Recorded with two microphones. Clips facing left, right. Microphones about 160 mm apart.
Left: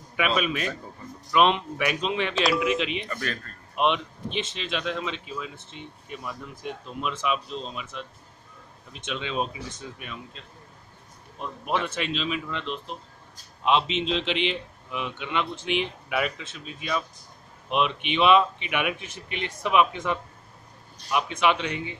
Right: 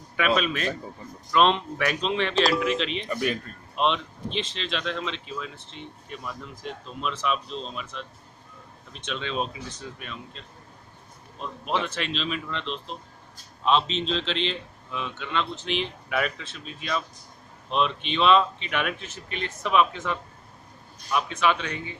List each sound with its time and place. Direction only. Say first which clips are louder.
0.4 s speech: even; 10° left (ahead or behind)
3.1 s speech: right 5 dB; 15° right (ahead or behind)
3.7 s speech: left 1 dB; 10° left (ahead or behind)
17.6 s speech: even; 15° left (ahead or behind)